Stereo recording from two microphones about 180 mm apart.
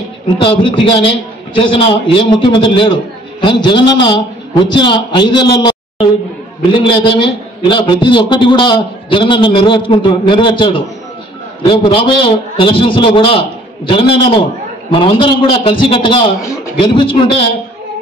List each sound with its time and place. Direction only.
0.4 s a man's voice: 30° left (ahead or behind)